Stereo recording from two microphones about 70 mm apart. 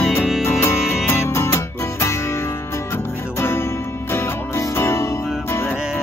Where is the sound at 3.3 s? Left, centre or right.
Left.